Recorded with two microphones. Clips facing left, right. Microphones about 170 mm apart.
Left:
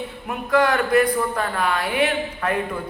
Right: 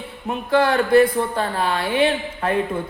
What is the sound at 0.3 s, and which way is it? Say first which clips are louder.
A woman's voice: right 1 dB; 30° right (ahead or behind).